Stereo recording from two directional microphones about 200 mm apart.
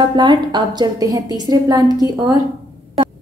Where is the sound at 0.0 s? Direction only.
20° right (ahead or behind).